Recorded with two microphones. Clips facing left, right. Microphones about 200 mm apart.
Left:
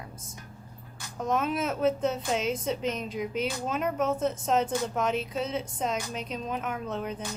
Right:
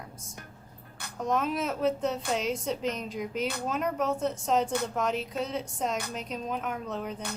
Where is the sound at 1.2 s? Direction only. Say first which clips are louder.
Left 1 dB; centre (ahead or behind).